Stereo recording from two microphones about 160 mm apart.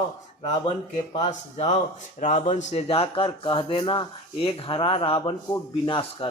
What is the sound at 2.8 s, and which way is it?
Speech, 35° left (ahead or behind).